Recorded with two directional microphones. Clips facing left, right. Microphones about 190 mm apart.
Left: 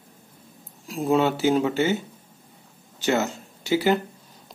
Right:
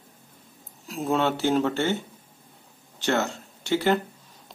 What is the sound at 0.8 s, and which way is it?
Speech, centre (ahead or behind).